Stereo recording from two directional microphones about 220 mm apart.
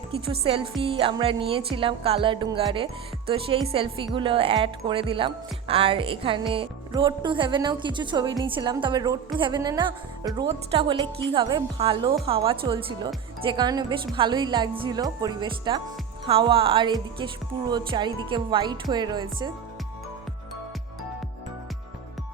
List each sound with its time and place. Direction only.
0.1 s a woman's voice: 25° right (ahead or behind)